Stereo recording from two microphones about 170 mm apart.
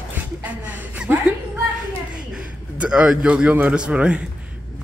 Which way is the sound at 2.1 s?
5° right (ahead or behind).